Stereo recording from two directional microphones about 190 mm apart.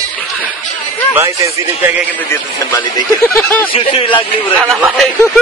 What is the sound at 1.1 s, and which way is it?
Speech, 10° right (ahead or behind).